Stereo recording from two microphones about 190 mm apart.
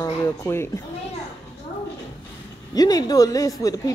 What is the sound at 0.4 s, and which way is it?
Speech, 15° left (ahead or behind).